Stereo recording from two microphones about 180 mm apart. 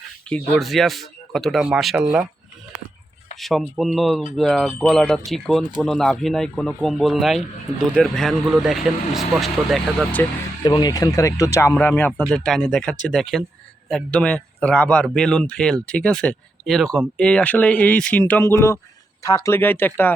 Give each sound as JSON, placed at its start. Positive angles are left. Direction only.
{"t": 0.3, "sound": "speech", "side_deg": 5}
{"t": 3.4, "sound": "speech", "side_deg": 0}
{"t": 10.6, "sound": "speech", "side_deg": 25}
{"t": 12.1, "sound": "speech", "side_deg": 0}